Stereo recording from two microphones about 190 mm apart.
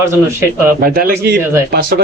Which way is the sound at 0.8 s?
50° right (ahead or behind).